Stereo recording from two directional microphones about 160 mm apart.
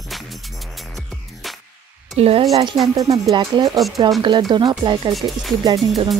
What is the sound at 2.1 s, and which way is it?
Speech, 40° right (ahead or behind).